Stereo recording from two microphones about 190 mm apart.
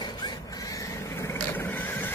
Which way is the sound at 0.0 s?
20° left (ahead or behind).